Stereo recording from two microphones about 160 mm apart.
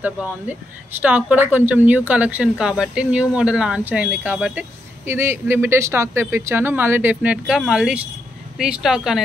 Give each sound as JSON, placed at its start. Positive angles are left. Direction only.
{"t": 0.0, "sound": "speech", "side_deg": -10}